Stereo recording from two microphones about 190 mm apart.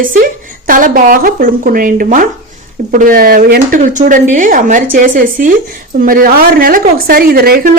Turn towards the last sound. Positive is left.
turn(degrees=-50)  # may be behind; listen again after turning